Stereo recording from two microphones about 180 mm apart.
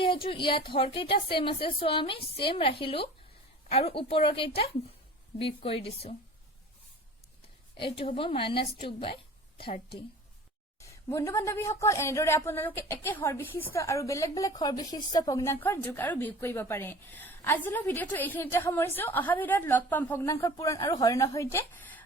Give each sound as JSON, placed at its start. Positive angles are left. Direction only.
{"t": 0.3, "sound": "a woman's voice", "side_deg": 25}
{"t": 7.8, "sound": "a woman's voice", "side_deg": 30}
{"t": 10.8, "sound": "a woman's voice", "side_deg": 15}